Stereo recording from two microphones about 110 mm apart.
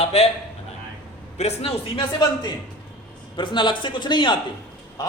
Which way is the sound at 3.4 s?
45° left (ahead or behind).